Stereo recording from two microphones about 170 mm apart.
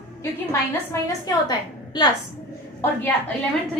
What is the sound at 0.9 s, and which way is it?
A woman's voice, 25° left (ahead or behind).